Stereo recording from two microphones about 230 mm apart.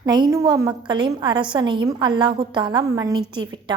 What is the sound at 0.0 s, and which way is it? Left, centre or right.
A woman's voice, centre.